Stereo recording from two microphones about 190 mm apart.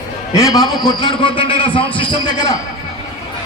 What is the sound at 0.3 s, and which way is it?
A man's voice, 20° left (ahead or behind).